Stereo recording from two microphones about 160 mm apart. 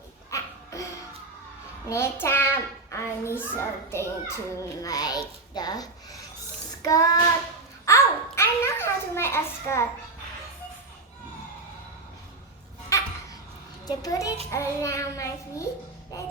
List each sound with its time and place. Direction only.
0.3 s dog: 20° left (ahead or behind)
1.9 s a child's voice: 15° left (ahead or behind)
7.9 s babbling: 15° left (ahead or behind)
12.9 s laughter: 20° left (ahead or behind)
13.8 s a child's voice: 20° left (ahead or behind)